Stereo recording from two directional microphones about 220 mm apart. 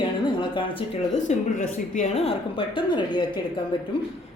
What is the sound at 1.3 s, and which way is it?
A woman's voice, 35° left (ahead or behind).